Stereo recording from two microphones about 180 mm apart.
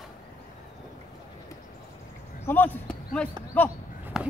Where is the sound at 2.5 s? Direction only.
10° left (ahead or behind).